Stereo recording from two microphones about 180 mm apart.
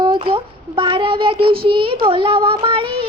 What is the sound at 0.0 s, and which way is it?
A child's voice, 25° right (ahead or behind).